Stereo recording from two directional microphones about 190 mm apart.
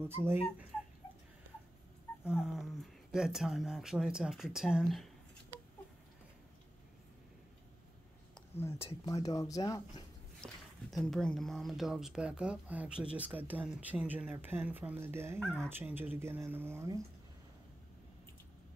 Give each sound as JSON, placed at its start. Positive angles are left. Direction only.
{"t": 0.0, "sound": "speech", "side_deg": -10}
{"t": 2.2, "sound": "speech", "side_deg": -5}
{"t": 8.4, "sound": "speech", "side_deg": 10}
{"t": 10.4, "sound": "speech", "side_deg": 0}